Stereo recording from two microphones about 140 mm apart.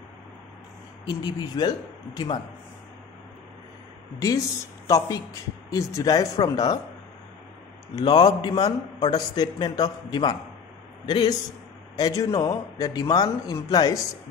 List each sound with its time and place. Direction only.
1.0 s a man's voice: 30° left (ahead or behind)
4.8 s speech: 25° left (ahead or behind)
7.9 s a man's voice: 30° left (ahead or behind)